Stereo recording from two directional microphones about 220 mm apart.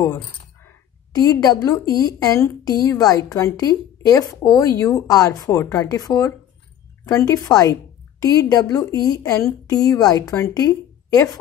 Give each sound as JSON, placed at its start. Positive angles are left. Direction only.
{"t": 1.1, "sound": "a woman's voice", "side_deg": 15}